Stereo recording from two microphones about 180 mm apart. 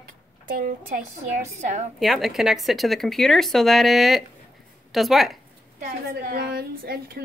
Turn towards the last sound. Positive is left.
turn(degrees=-60)  # may be behind; listen again after turning